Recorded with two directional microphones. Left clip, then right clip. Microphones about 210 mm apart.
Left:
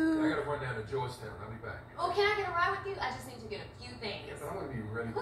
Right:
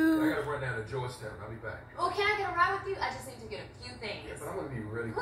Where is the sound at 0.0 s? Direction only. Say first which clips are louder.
Right 3 dB; 10° right (ahead or behind).